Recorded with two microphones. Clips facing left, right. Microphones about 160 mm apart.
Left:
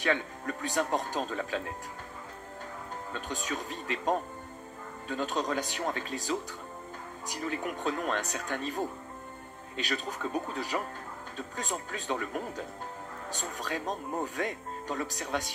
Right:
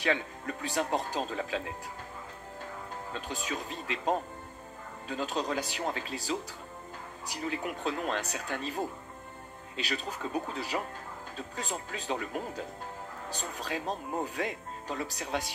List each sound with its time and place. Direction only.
0.0 s speech: 45° left (ahead or behind)
3.1 s speech: 45° left (ahead or behind)
7.3 s speech: 45° left (ahead or behind)
9.8 s speech: 45° left (ahead or behind)
14.3 s speech: 45° left (ahead or behind)